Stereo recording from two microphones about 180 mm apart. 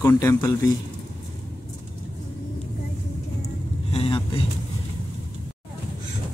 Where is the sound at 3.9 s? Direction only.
30° left (ahead or behind).